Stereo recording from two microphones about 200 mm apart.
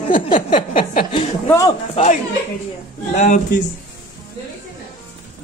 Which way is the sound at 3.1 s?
35° left (ahead or behind).